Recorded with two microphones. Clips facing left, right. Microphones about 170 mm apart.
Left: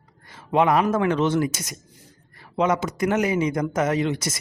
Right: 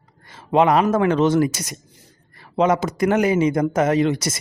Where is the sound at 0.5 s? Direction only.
35° right (ahead or behind).